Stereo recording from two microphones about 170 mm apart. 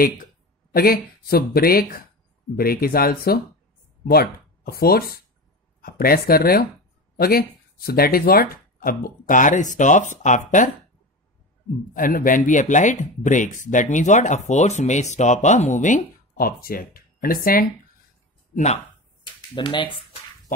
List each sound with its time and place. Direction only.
0.7 s speech: 60° left (ahead or behind); by 10.7 s 45° left (ahead or behind)
11.9 s speech: 55° left (ahead or behind)
18.5 s speech: 40° left (ahead or behind)
19.5 s speech: 30° left (ahead or behind)